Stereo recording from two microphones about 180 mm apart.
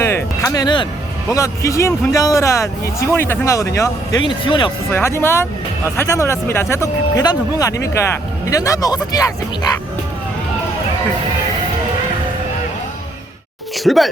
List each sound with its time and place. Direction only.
0.0 s speech: 15° left (ahead or behind)
4.9 s speech: 15° left (ahead or behind)
13.7 s speech: centre (ahead or behind)